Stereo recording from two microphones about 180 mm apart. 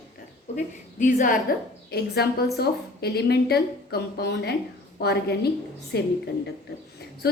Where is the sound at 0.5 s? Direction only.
45° left (ahead or behind); by 6.1 s 65° left (ahead or behind).